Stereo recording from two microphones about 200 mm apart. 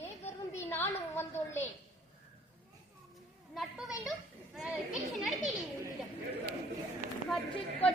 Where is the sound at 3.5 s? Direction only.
Centre (ahead or behind).